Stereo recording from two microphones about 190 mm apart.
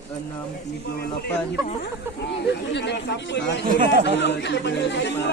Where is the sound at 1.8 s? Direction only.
60° left (ahead or behind).